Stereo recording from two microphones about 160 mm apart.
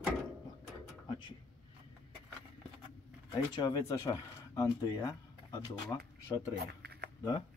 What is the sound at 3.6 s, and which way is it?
Speech, 25° left (ahead or behind).